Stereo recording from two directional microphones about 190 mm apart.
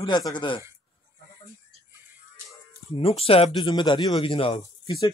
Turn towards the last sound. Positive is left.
turn(degrees=30)  # may be behind; listen again after turning